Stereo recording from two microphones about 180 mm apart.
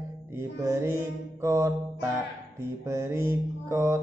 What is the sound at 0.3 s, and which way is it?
Mantra, 15° right (ahead or behind).